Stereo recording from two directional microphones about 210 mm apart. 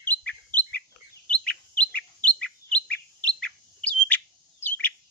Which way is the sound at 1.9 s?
5° left (ahead or behind).